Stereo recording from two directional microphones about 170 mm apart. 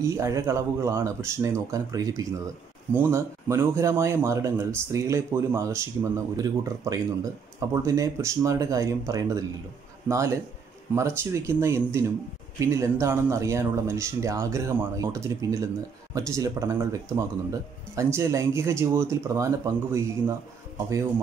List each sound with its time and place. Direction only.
0.0 s speech: 20° right (ahead or behind)